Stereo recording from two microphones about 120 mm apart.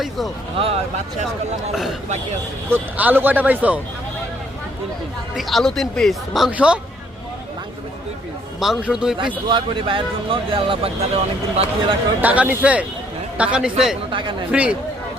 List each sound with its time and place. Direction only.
0.6 s speech: 60° right (ahead or behind)
1.7 s speech: centre (ahead or behind)
2.7 s speech: 15° right (ahead or behind)
5.4 s speech: centre (ahead or behind)
8.5 s speech: centre (ahead or behind)
9.5 s speech: 45° right (ahead or behind)
12.2 s speech: 15° right (ahead or behind)
14.1 s speech: 40° right (ahead or behind)
14.5 s speech: 10° right (ahead or behind)